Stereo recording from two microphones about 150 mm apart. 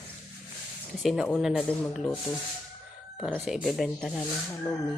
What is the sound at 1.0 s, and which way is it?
Speech, 5° right (ahead or behind).